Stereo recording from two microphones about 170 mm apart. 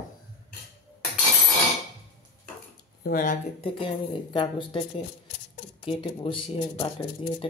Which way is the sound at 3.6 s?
30° left (ahead or behind).